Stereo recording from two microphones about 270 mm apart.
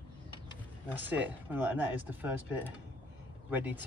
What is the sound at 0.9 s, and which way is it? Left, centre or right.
Speech, centre.